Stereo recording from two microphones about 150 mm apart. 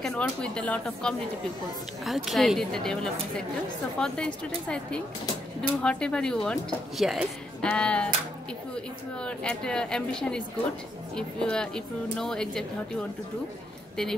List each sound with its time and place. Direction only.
0.0 s speech: 5° left (ahead or behind)
7.6 s music: 5° left (ahead or behind)
9.2 s speech: 5° left (ahead or behind)